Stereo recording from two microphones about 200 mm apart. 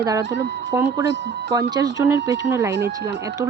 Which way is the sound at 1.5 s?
20° right (ahead or behind).